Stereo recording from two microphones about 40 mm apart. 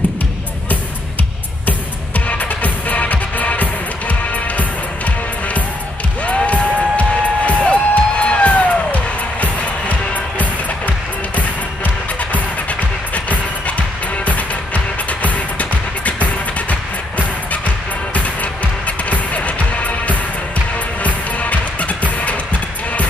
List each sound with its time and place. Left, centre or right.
1.7 s music: left